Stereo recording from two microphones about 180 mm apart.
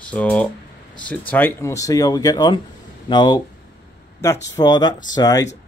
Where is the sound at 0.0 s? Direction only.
5° left (ahead or behind).